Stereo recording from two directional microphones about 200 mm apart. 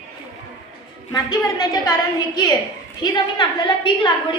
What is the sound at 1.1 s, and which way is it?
A woman's voice, 20° left (ahead or behind).